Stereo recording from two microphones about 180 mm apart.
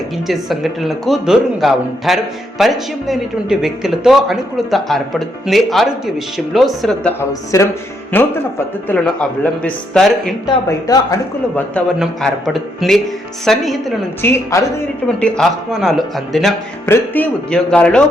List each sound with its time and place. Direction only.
0.3 s speech: centre (ahead or behind)
10.4 s speech: 20° left (ahead or behind)
11.9 s speech: centre (ahead or behind)
14.2 s speech: 15° left (ahead or behind)
15.0 s speech: 5° left (ahead or behind)
16.8 s speech: 10° left (ahead or behind)